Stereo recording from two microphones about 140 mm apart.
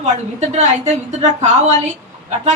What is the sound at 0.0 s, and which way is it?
A woman's voice, 50° right (ahead or behind).